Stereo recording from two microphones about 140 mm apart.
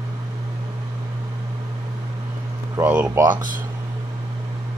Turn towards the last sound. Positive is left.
turn(degrees=-15)  # may be behind; listen again after turning